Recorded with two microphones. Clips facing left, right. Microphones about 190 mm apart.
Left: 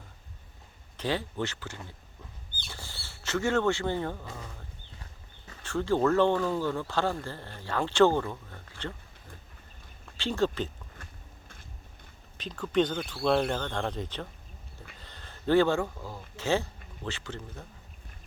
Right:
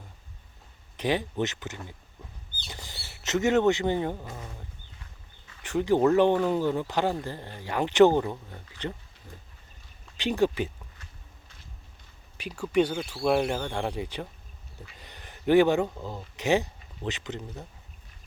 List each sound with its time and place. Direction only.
0.9 s speech: 15° right (ahead or behind)
5.6 s speech: 15° right (ahead or behind)
10.2 s speech: 15° right (ahead or behind)
10.9 s a sound: 50° left (ahead or behind)
12.4 s speech: 10° right (ahead or behind)